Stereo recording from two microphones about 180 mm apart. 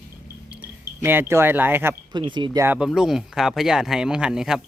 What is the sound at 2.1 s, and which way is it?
Speech, 25° right (ahead or behind).